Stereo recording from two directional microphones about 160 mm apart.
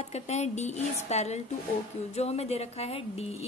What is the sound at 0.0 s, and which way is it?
Speech, 45° left (ahead or behind).